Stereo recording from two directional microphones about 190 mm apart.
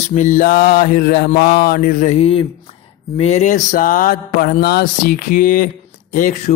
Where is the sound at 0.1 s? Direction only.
40° left (ahead or behind).